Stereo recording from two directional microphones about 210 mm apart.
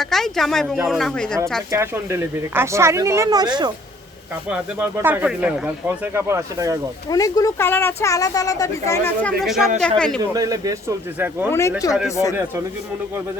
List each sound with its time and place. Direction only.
0.0 s speech: centre (ahead or behind)
1.7 s speech: 15° right (ahead or behind)
4.4 s speech: 5° right (ahead or behind)
7.1 s a woman's voice: 15° left (ahead or behind)
9.4 s speech: centre (ahead or behind)
10.3 s speech: 15° right (ahead or behind)
11.8 s a woman's voice: 15° left (ahead or behind)